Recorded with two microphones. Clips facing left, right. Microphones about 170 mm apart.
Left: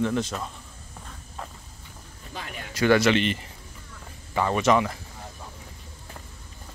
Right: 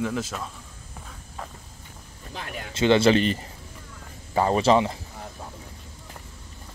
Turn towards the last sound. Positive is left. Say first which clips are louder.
# right 2 dB
turn(degrees=-25)  # may be behind; listen again after turning